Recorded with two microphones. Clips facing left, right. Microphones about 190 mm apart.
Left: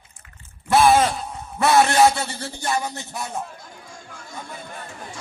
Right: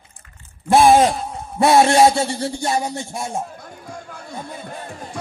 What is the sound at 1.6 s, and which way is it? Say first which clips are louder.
A man's voice: right 3 dB; 25° right (ahead or behind).